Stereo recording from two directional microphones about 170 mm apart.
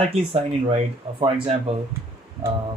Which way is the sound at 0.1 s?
35° right (ahead or behind).